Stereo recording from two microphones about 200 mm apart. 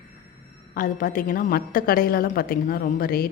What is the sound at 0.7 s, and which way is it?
A woman's voice, 45° left (ahead or behind).